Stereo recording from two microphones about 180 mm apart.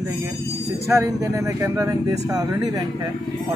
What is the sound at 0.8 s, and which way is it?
Speech, 15° right (ahead or behind).